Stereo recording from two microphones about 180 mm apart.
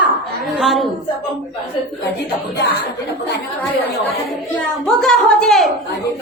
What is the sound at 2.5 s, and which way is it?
Speech, 65° left (ahead or behind).